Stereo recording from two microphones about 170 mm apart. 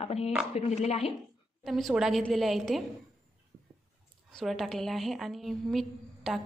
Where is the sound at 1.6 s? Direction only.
Centre (ahead or behind).